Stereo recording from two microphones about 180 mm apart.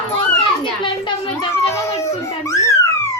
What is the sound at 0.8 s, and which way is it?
Speech, 25° left (ahead or behind).